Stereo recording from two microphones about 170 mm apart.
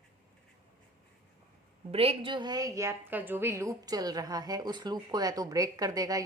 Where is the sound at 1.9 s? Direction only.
35° right (ahead or behind).